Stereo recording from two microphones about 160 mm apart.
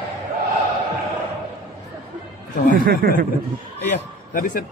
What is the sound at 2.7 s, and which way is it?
Speech, 75° right (ahead or behind).